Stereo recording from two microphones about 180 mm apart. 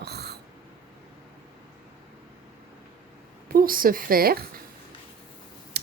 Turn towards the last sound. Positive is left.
turn(degrees=-65)  # may be behind; listen again after turning